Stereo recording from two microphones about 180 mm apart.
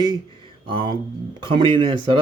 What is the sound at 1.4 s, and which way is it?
Speech, 25° right (ahead or behind).